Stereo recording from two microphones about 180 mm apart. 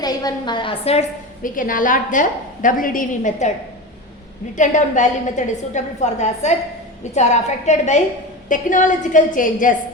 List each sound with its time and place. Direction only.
0.0 s a woman's voice: 20° left (ahead or behind)
1.4 s a woman's voice: 50° left (ahead or behind)
4.5 s a woman's voice: 45° left (ahead or behind)